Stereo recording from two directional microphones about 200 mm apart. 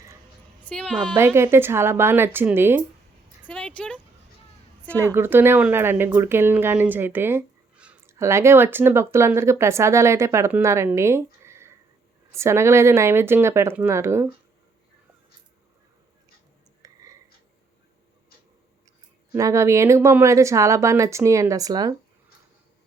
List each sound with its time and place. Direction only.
0.6 s a woman's voice: 5° left (ahead or behind)
1.1 s speech: 15° right (ahead or behind)
3.5 s speech: 5° left (ahead or behind)
4.9 s speech: 15° right (ahead or behind)
16.8 s a sound: 15° right (ahead or behind)
19.3 s speech: 15° right (ahead or behind)